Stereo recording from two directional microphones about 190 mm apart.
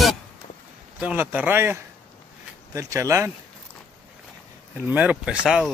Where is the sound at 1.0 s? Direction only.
10° right (ahead or behind).